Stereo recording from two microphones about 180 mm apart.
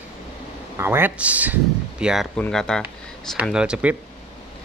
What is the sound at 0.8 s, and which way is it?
Speech, 10° right (ahead or behind).